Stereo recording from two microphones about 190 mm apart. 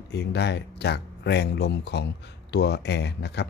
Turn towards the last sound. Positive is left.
turn(degrees=65)  # may be behind; listen again after turning